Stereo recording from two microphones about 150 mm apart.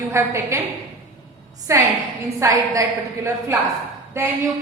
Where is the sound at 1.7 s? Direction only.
20° right (ahead or behind).